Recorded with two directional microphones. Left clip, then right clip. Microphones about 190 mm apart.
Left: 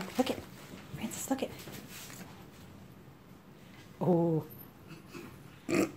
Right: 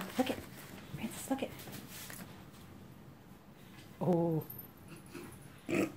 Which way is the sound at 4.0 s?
20° left (ahead or behind).